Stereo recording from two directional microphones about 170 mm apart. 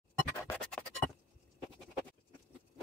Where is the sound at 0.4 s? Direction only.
5° left (ahead or behind).